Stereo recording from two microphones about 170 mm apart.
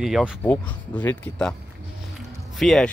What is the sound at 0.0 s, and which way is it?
Speech, 5° right (ahead or behind).